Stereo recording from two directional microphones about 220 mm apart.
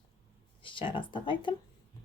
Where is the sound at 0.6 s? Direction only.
20° left (ahead or behind).